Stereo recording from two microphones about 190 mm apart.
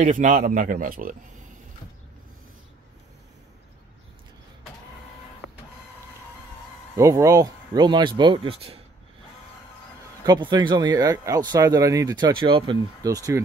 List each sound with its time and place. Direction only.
0.0 s speech: 45° right (ahead or behind)
7.0 s speech: 15° right (ahead or behind)
10.2 s speech: 20° right (ahead or behind)